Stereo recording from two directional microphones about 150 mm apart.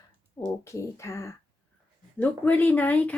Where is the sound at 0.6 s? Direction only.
20° left (ahead or behind).